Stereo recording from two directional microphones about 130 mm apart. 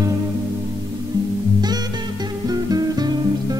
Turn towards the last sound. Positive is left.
turn(degrees=-30)  # may be behind; listen again after turning